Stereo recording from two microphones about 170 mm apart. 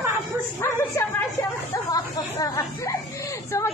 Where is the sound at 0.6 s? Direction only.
15° left (ahead or behind).